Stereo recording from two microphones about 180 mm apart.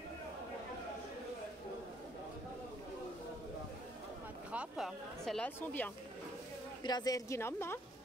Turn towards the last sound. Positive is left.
turn(degrees=15)  # may be behind; listen again after turning